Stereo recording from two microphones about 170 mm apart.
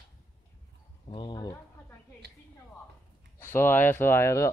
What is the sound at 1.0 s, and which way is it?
Speech, 30° left (ahead or behind).